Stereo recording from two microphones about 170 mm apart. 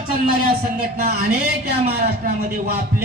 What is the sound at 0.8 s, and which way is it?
A man's voice, 65° right (ahead or behind).